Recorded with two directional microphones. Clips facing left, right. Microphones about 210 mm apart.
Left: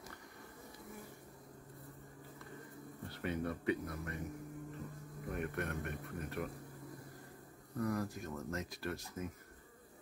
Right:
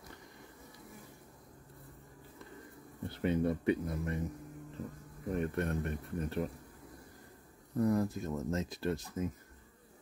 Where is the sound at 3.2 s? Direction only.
25° right (ahead or behind).